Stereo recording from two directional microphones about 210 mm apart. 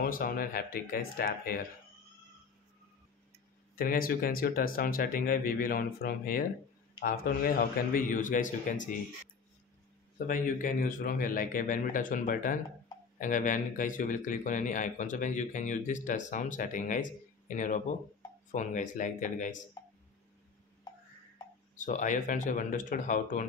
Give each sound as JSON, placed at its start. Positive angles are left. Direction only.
{"t": 0.0, "sound": "speech", "side_deg": 45}
{"t": 3.7, "sound": "speech", "side_deg": 45}
{"t": 10.1, "sound": "speech", "side_deg": 40}
{"t": 21.7, "sound": "speech", "side_deg": 35}